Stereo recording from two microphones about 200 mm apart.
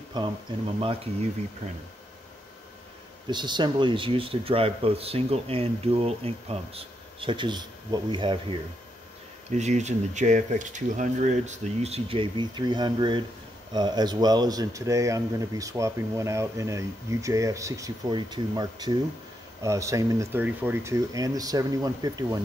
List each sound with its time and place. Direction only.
0.2 s speech: 20° right (ahead or behind)
3.3 s speech: 20° right (ahead or behind)
9.6 s speech: 35° right (ahead or behind); by 22.4 s 20° right (ahead or behind)